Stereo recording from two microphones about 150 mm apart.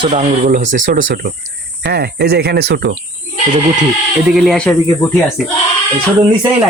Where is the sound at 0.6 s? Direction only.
55° right (ahead or behind).